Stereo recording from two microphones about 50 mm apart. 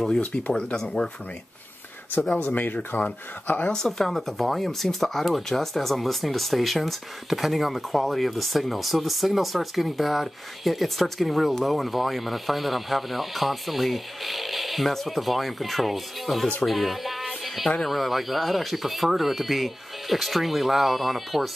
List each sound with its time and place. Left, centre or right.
0.5 s speech: centre
2.4 s speech: left
3.7 s speech: centre
16.6 s music: centre
17.8 s speech: centre